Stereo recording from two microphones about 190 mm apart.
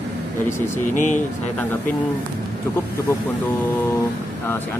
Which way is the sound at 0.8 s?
40° left (ahead or behind).